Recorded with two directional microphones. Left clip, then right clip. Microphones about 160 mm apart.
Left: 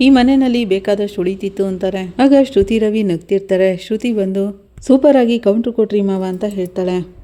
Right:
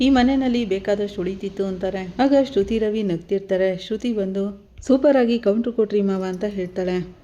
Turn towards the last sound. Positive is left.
turn(degrees=30)  # may be behind; listen again after turning